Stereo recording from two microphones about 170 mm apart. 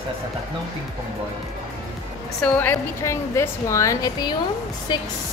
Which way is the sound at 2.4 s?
10° left (ahead or behind).